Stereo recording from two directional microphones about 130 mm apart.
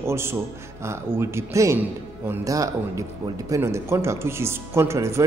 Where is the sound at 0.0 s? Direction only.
20° right (ahead or behind).